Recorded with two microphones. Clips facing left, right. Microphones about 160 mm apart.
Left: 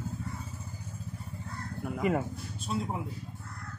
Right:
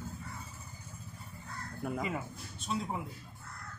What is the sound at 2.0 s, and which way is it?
Speech, 60° left (ahead or behind).